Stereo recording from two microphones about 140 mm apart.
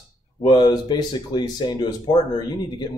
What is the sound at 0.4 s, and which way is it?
Speech, 30° left (ahead or behind).